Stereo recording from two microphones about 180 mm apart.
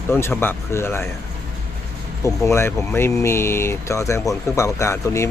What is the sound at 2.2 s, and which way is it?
Speech, 15° left (ahead or behind).